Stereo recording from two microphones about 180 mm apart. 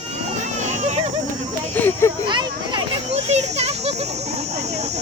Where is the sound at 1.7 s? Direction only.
10° left (ahead or behind).